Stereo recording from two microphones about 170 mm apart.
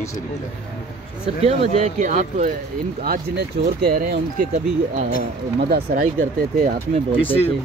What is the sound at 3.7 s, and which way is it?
Speech, 65° right (ahead or behind).